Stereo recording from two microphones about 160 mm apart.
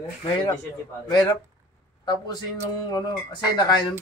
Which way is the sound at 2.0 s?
25° left (ahead or behind).